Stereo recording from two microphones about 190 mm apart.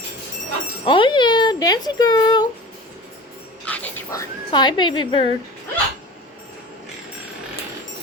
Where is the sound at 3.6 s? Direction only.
10° left (ahead or behind).